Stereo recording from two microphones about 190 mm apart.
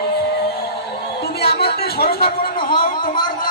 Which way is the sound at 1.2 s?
55° left (ahead or behind).